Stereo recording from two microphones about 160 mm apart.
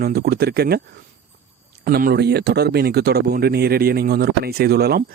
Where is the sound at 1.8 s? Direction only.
70° right (ahead or behind).